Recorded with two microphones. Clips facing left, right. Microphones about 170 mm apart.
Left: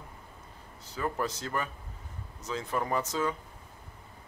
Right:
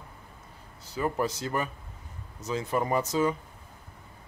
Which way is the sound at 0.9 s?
15° right (ahead or behind).